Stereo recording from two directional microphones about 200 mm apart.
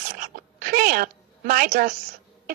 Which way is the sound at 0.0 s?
45° right (ahead or behind).